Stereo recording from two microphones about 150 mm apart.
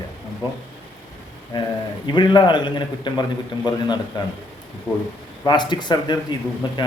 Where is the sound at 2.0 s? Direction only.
30° left (ahead or behind).